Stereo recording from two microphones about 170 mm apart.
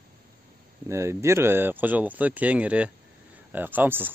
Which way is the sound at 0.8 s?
15° right (ahead or behind).